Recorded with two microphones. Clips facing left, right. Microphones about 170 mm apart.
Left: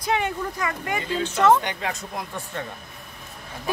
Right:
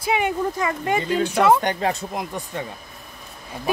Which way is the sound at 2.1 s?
20° right (ahead or behind).